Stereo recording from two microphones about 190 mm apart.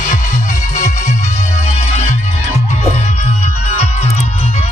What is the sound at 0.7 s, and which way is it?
Music, 40° left (ahead or behind).